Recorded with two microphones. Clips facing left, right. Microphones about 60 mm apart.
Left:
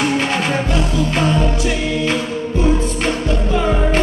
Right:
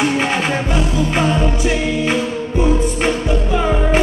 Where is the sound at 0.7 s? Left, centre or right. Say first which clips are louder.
Right 1 dB; centre.